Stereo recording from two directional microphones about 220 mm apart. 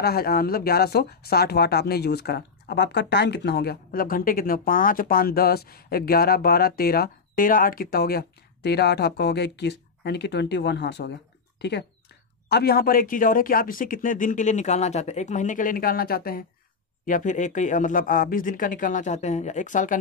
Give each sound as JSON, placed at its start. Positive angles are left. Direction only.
{"t": 0.0, "sound": "speech", "side_deg": 45}
{"t": 12.4, "sound": "speech", "side_deg": 45}